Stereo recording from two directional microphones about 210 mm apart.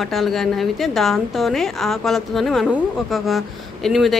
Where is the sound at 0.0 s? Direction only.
Centre (ahead or behind).